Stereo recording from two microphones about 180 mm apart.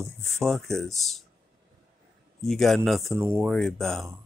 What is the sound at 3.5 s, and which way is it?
Speech, centre (ahead or behind).